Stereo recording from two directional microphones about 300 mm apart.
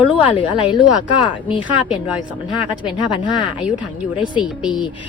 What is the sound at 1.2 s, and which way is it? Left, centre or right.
A woman's voice, centre.